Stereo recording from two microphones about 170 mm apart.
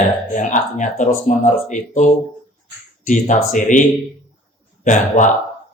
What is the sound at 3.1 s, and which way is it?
Speech, 50° left (ahead or behind).